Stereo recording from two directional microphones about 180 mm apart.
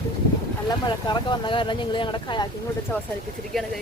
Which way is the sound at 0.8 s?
25° left (ahead or behind).